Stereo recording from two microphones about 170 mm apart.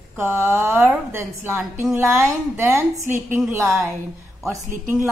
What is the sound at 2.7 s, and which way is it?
A woman's voice, 15° right (ahead or behind).